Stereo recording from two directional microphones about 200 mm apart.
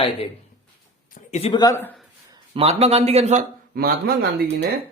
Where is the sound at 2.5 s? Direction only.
30° right (ahead or behind).